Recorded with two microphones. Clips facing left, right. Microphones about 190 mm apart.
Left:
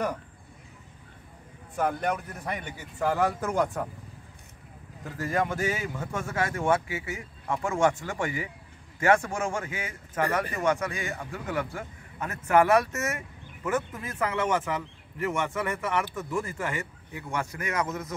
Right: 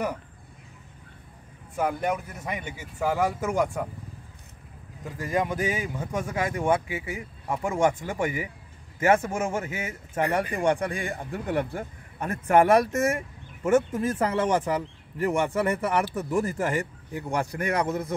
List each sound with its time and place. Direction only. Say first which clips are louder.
1.8 s speech: right 1 dB; 10° right (ahead or behind)
5.0 s speech: right 1 dB; 15° right (ahead or behind); by 18.1 s 30° right (ahead or behind)